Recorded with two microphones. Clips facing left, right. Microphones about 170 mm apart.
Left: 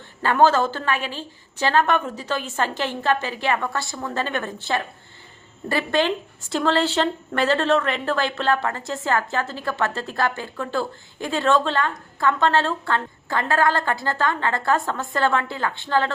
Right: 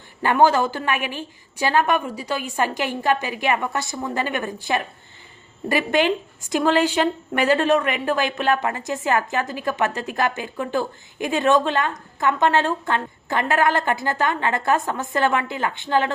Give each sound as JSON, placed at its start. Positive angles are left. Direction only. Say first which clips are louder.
{"t": 0.2, "sound": "a woman's voice", "louder": "even", "side_deg": -15}
{"t": 5.6, "sound": "a woman's voice", "louder": "right 2 dB", "side_deg": -15}